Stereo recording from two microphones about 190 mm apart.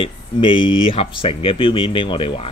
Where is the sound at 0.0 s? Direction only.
25° left (ahead or behind).